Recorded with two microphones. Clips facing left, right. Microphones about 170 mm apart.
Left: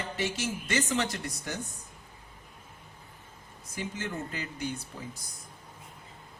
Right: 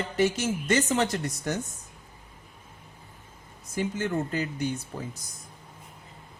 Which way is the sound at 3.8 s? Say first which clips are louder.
Right 7 dB; 45° right (ahead or behind).